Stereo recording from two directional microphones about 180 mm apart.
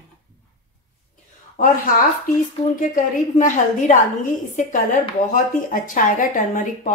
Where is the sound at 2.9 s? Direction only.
45° left (ahead or behind).